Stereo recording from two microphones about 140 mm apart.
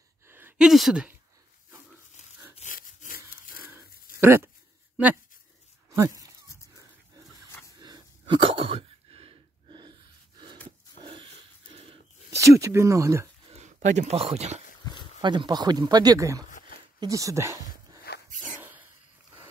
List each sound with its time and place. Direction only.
0.3 s a sound: 15° right (ahead or behind)
0.6 s speech: centre (ahead or behind)
2.6 s a sound: 70° left (ahead or behind); by 3.6 s 90° left
4.2 s speech: 15° right (ahead or behind)
5.9 s speech: 25° right (ahead or behind)
7.8 s sneeze: 35° right (ahead or behind)
11.0 s a sound: 35° right (ahead or behind)
12.4 s speech: 20° right (ahead or behind)
13.5 s speech: 50° right (ahead or behind)
14.8 s a sound: 30° left (ahead or behind)
15.2 s speech: 30° right (ahead or behind)
18.6 s dog: 15° right (ahead or behind)